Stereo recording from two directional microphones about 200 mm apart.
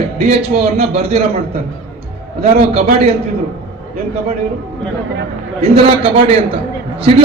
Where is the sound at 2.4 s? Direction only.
30° right (ahead or behind).